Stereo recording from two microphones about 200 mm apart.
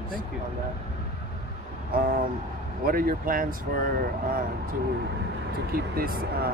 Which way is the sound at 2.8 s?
45° right (ahead or behind).